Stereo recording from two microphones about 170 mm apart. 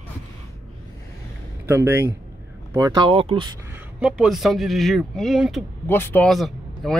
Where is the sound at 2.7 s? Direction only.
25° right (ahead or behind).